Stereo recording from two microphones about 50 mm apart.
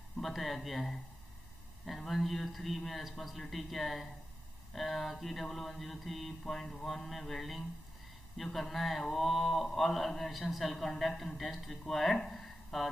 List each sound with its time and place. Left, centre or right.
0.2 s speech: centre
2.0 s speech: centre
6.6 s speech: centre
7.1 s speech: centre
12.3 s a sound: centre